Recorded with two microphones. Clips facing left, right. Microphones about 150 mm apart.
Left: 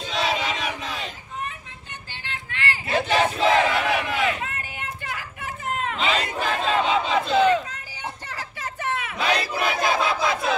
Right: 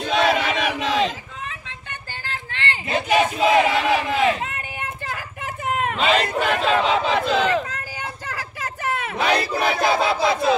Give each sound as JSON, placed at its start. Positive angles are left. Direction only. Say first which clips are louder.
{"t": 0.0, "sound": "a sound", "louder": "right 6 dB", "side_deg": -60}
{"t": 2.2, "sound": "battle cry", "louder": "right 1 dB", "side_deg": -35}
{"t": 5.8, "sound": "crowd", "louder": "right 5 dB", "side_deg": -60}
{"t": 9.0, "sound": "battle cry", "louder": "right 4 dB", "side_deg": -40}